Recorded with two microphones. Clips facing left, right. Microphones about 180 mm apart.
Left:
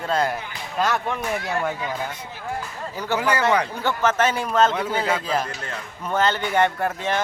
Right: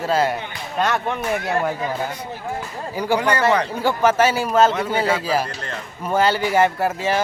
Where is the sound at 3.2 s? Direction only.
5° left (ahead or behind).